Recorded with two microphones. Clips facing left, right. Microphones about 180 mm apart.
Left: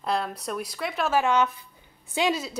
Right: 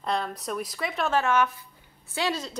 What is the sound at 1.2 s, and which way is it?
A woman's voice, 20° left (ahead or behind).